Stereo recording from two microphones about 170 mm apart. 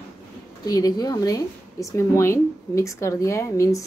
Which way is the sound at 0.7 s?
20° left (ahead or behind).